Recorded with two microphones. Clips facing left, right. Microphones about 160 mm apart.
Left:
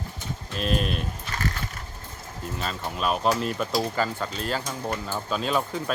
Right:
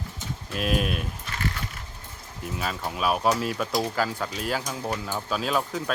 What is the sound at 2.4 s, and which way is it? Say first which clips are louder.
Speech: right 1 dB; 5° right (ahead or behind).